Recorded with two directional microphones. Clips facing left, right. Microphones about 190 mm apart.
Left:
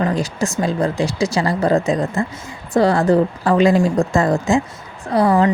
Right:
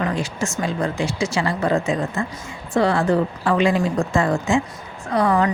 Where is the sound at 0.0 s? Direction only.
35° left (ahead or behind).